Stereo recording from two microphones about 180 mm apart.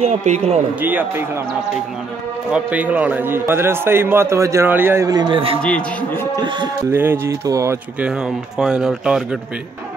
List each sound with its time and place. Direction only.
0.0 s a man's voice: 35° right (ahead or behind)
0.7 s a man's voice: 10° right (ahead or behind)
2.5 s a man's voice: 10° right (ahead or behind); by 5.6 s 30° right (ahead or behind)
5.6 s a man's voice: 5° left (ahead or behind)
6.9 s a man's voice: 10° right (ahead or behind)
8.1 s speech: 5° right (ahead or behind)